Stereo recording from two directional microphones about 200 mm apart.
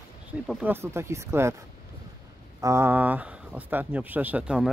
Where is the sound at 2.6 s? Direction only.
15° right (ahead or behind).